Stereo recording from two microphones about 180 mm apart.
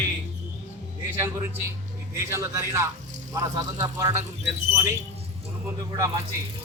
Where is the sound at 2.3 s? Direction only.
15° right (ahead or behind).